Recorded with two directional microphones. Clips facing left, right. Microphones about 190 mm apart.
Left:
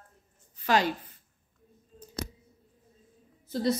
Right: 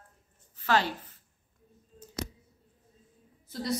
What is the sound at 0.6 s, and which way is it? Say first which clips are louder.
Speech: left 2 dB; 15° left (ahead or behind).